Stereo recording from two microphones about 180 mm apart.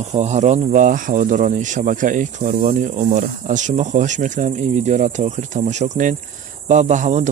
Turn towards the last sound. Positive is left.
turn(degrees=-40)  # may be behind; listen again after turning